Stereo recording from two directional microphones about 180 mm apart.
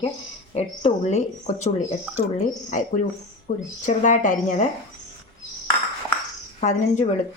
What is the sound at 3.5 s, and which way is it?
Speech, 40° left (ahead or behind).